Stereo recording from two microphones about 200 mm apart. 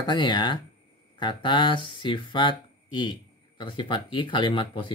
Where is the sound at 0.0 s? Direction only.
20° left (ahead or behind).